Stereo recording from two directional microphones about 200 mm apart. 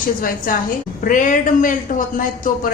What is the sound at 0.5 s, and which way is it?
Speech, 45° left (ahead or behind).